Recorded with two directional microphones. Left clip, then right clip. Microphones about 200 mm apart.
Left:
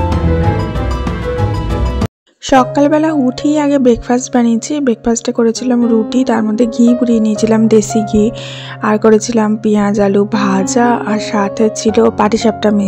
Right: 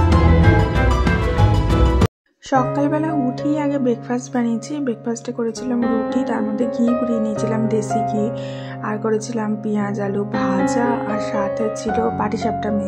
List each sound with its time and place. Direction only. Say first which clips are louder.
2.5 s a woman's voice: left 9 dB; 35° left (ahead or behind)